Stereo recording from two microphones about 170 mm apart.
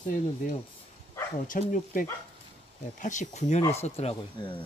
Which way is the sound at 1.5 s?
50° left (ahead or behind).